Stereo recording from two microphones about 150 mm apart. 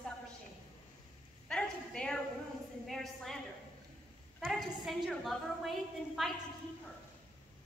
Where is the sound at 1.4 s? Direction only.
5° left (ahead or behind).